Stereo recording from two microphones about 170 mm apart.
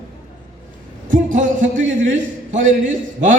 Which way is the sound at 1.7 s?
90° right.